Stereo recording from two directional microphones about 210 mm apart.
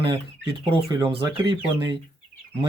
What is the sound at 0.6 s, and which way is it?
Speech, 25° right (ahead or behind).